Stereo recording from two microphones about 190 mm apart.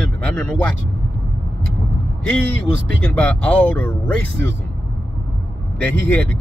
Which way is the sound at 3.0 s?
5° left (ahead or behind).